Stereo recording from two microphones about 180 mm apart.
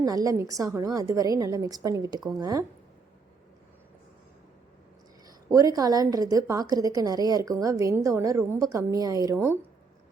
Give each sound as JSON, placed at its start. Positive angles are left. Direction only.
{"t": 0.0, "sound": "a woman's voice", "side_deg": -20}
{"t": 5.5, "sound": "a woman's voice", "side_deg": -20}